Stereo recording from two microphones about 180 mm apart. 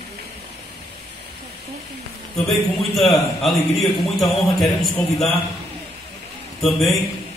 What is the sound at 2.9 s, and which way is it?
Speech, centre (ahead or behind).